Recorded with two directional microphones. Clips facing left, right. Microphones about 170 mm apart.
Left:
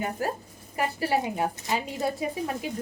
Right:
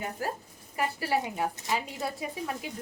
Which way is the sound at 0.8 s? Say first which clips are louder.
Left 3 dB; 25° left (ahead or behind).